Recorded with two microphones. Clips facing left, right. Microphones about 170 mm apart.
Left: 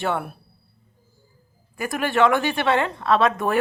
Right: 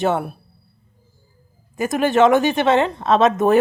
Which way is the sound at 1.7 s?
20° right (ahead or behind).